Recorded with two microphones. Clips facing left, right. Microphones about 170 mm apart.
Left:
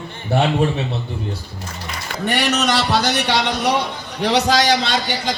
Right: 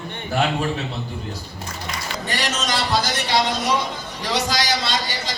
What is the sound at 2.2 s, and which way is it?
A man's voice, 65° left (ahead or behind).